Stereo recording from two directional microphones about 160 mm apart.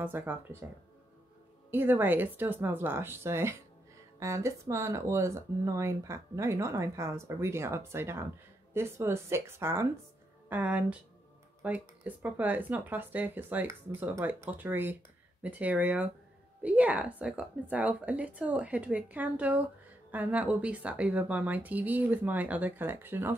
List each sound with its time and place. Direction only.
0.0 s speech: 10° right (ahead or behind)
1.7 s speech: 15° right (ahead or behind)